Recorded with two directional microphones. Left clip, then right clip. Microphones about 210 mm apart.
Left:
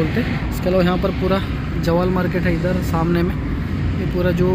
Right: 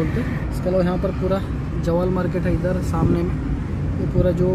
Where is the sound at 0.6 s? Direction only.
Centre (ahead or behind).